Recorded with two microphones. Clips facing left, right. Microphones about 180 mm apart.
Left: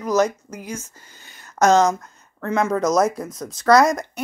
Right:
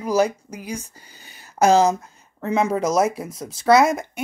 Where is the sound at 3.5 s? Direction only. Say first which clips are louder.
Even; 5° right (ahead or behind).